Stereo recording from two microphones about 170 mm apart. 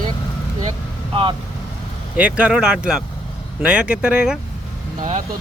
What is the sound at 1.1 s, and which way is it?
Speech, 30° right (ahead or behind).